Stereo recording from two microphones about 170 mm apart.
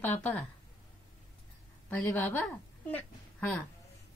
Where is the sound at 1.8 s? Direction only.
10° left (ahead or behind).